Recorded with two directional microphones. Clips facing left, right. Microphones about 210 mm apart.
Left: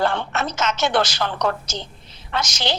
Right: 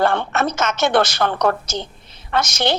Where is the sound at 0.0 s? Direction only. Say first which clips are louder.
Right 4 dB; 55° right (ahead or behind).